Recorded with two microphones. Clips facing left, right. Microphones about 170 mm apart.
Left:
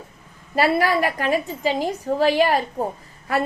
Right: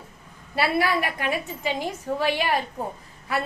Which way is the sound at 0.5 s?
45° left (ahead or behind).